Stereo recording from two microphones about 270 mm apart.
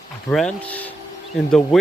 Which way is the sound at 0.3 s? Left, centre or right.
Centre.